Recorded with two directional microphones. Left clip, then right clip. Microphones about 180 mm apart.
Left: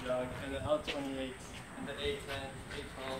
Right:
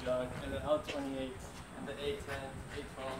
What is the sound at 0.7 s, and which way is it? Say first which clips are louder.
Speech: even; 5° right (ahead or behind).